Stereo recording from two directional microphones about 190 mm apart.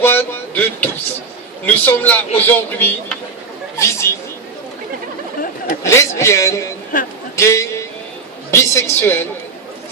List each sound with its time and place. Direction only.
0.0 s a man's voice: 10° left (ahead or behind)
5.8 s a man's voice: 15° left (ahead or behind)
6.9 s a man's voice: 45° left (ahead or behind)
7.3 s a man's voice: 15° left (ahead or behind)